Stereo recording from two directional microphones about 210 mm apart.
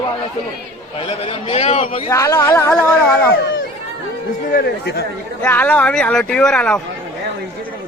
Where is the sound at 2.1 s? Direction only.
15° left (ahead or behind).